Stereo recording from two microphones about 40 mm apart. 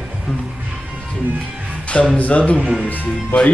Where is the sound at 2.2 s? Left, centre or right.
Left.